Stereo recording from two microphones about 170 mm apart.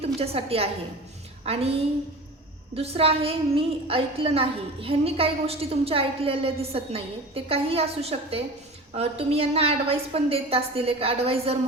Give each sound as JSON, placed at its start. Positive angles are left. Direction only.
{"t": 0.2, "sound": "a woman's voice", "side_deg": -35}
{"t": 2.7, "sound": "a woman's voice", "side_deg": -35}